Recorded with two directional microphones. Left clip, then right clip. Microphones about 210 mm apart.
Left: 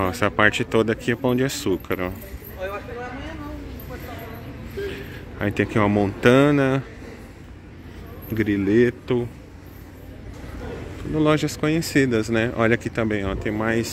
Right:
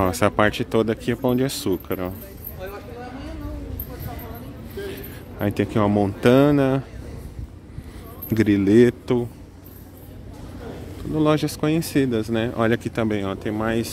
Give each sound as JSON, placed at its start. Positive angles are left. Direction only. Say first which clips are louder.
{"t": 0.0, "sound": "speech", "louder": "even", "side_deg": -20}
{"t": 4.9, "sound": "speech", "louder": "left 1 dB", "side_deg": -15}
{"t": 8.3, "sound": "speech", "louder": "right 3 dB", "side_deg": -20}
{"t": 11.1, "sound": "speech", "louder": "even", "side_deg": -10}